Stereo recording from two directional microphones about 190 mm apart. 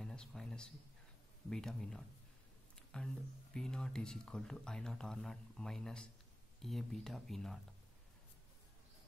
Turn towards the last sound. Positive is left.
turn(degrees=0)  # may be behind; listen again after turning